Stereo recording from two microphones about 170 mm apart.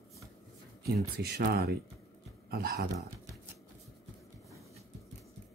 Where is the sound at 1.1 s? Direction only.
75° right (ahead or behind).